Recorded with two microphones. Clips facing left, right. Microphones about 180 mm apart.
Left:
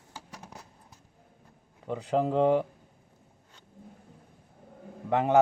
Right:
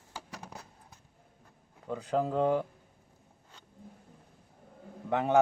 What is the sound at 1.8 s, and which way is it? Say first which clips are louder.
Speech: left 3 dB; 20° left (ahead or behind).